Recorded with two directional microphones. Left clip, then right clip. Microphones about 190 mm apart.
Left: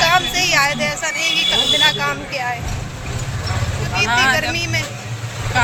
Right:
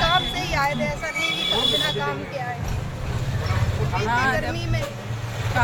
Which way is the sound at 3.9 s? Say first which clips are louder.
Left 7 dB; 10° right (ahead or behind).